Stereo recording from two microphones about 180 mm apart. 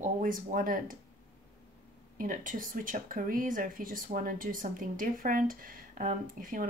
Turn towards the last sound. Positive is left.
turn(degrees=-50)  # may be behind; listen again after turning